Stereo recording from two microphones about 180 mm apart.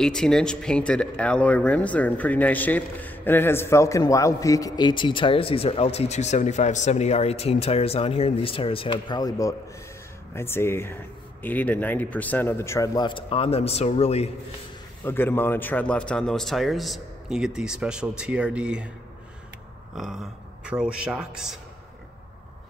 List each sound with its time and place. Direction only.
0.0 s speech: 5° left (ahead or behind); by 14.3 s 35° left (ahead or behind)
15.0 s a man's voice: 10° left (ahead or behind); by 18.9 s 5° right (ahead or behind)
20.0 s a man's voice: centre (ahead or behind)